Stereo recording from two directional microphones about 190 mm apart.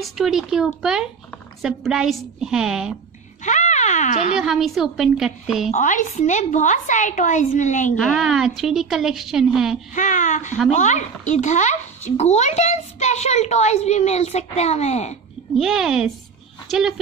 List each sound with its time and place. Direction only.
0.0 s speech: centre (ahead or behind)
3.4 s speech: 40° left (ahead or behind)
4.4 s speech: centre (ahead or behind)
5.7 s a child's voice: 40° left (ahead or behind)
7.9 s speech: centre (ahead or behind)
9.9 s a child's voice: 40° left (ahead or behind)
15.5 s speech: centre (ahead or behind)